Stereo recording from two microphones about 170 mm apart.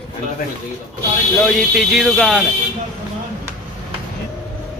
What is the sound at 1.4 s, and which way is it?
Speech, centre (ahead or behind).